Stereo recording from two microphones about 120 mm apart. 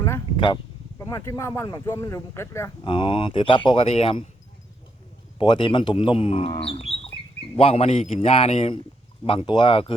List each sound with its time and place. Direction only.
0.3 s speech: 40° left (ahead or behind)
0.9 s speech: 25° left (ahead or behind)
2.8 s speech: 45° left (ahead or behind)
5.4 s a man's voice: 45° left (ahead or behind)